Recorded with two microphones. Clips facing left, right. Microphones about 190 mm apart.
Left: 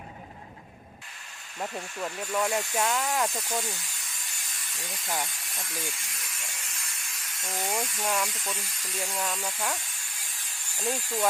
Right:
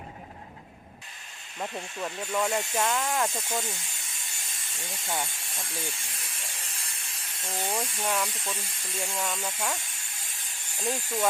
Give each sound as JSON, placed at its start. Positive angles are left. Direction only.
{"t": 1.5, "sound": "speech", "side_deg": 0}
{"t": 5.0, "sound": "speech", "side_deg": 0}
{"t": 5.5, "sound": "a sound", "side_deg": -30}
{"t": 8.0, "sound": "speech", "side_deg": -5}
{"t": 8.5, "sound": "speech", "side_deg": -30}
{"t": 9.0, "sound": "speech", "side_deg": 0}
{"t": 10.8, "sound": "speech", "side_deg": 0}